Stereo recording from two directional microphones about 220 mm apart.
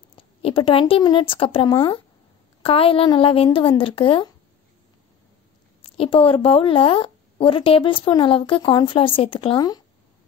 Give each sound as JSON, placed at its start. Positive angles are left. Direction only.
{"t": 0.4, "sound": "a woman's voice", "side_deg": 25}
{"t": 5.9, "sound": "a woman's voice", "side_deg": 25}